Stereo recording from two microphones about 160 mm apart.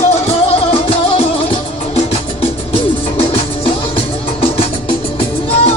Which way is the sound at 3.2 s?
35° left (ahead or behind).